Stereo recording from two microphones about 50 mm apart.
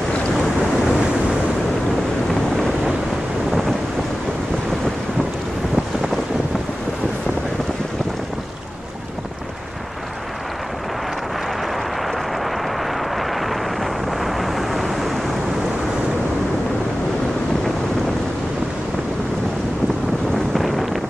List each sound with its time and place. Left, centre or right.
0.8 s waves: centre
14.2 s vehicle: centre
20.5 s wind noise: centre